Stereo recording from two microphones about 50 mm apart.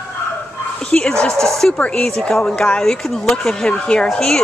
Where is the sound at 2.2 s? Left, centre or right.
Centre.